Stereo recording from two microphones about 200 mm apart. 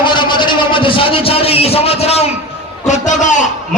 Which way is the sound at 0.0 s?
25° left (ahead or behind).